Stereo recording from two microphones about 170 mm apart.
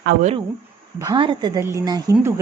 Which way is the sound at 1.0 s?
25° right (ahead or behind).